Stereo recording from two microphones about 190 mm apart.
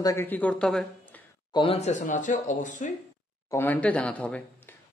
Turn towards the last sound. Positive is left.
turn(degrees=10)  # may be behind; listen again after turning